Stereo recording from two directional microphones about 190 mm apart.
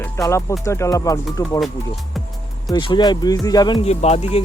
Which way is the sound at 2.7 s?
25° left (ahead or behind).